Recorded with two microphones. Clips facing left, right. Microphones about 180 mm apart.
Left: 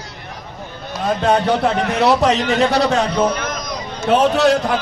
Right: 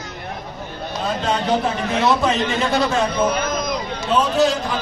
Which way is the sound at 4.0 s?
65° left (ahead or behind).